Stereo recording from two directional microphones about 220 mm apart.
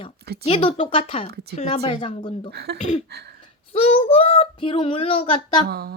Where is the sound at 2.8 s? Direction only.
30° left (ahead or behind).